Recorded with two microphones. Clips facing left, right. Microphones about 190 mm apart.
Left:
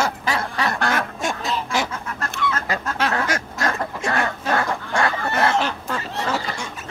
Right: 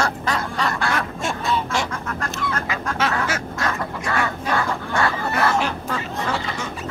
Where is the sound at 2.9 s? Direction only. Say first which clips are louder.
Even; 5° right (ahead or behind).